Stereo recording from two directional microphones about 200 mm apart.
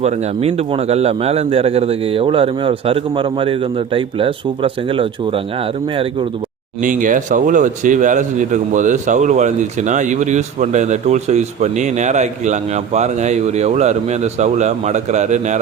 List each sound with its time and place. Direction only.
0.0 s a man's voice: 30° right (ahead or behind)
6.8 s speech: 40° right (ahead or behind)